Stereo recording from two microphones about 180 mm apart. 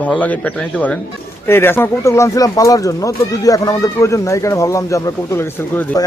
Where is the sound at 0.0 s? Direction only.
10° left (ahead or behind).